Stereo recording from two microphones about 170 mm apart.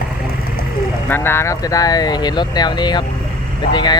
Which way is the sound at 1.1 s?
15° left (ahead or behind).